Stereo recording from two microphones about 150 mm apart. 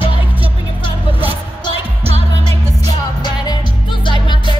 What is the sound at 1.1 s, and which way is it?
Music, 40° right (ahead or behind).